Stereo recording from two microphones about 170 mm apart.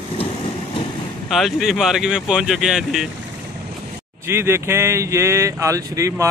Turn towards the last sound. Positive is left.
turn(degrees=-20)  # may be behind; listen again after turning